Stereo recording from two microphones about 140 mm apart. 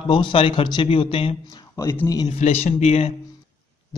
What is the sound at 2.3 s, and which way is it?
Speech, 50° left (ahead or behind).